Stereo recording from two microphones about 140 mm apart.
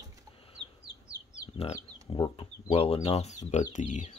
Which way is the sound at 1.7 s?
35° left (ahead or behind).